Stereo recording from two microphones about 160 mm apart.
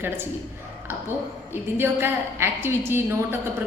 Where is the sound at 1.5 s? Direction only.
15° right (ahead or behind).